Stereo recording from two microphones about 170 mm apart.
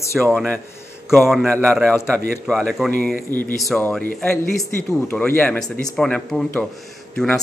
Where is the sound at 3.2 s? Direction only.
10° left (ahead or behind).